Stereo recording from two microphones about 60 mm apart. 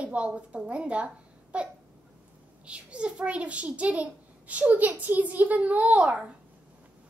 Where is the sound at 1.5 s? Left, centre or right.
Centre.